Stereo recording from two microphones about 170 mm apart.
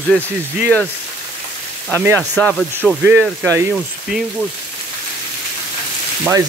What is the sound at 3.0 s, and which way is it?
Speech, 10° right (ahead or behind).